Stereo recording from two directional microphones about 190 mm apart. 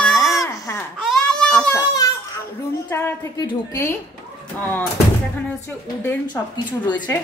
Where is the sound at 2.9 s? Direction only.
15° left (ahead or behind).